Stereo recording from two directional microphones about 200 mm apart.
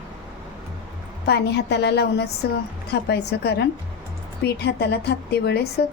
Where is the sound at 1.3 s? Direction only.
55° left (ahead or behind).